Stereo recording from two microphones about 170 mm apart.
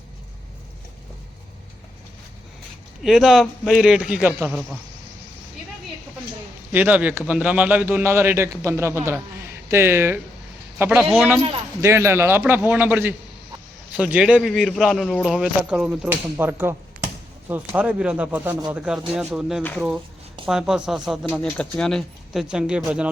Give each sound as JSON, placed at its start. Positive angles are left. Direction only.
{"t": 3.0, "sound": "speech", "side_deg": -5}
{"t": 6.7, "sound": "a man's voice", "side_deg": -10}